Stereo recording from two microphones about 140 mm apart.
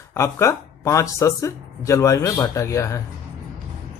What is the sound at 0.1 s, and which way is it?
Speech, 20° left (ahead or behind).